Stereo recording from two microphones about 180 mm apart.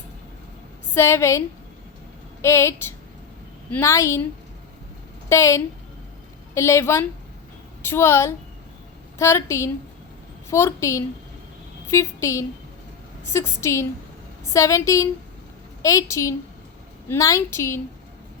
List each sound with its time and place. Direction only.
0.9 s a woman's voice: 15° left (ahead or behind)
5.3 s a woman's voice: 15° left (ahead or behind)